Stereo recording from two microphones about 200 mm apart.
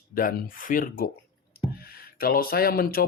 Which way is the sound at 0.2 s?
45° left (ahead or behind).